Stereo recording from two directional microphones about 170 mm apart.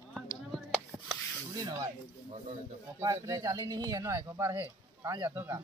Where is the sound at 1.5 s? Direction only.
20° right (ahead or behind).